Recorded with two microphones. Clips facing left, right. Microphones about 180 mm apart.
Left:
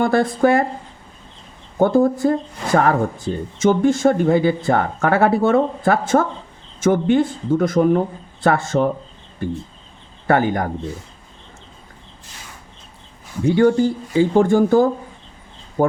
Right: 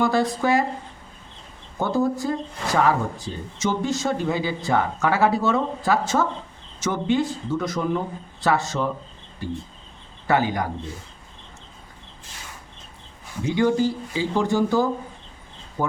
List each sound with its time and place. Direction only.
0.0 s speech: 55° left (ahead or behind)
1.8 s speech: 55° left (ahead or behind)
13.4 s speech: 60° left (ahead or behind)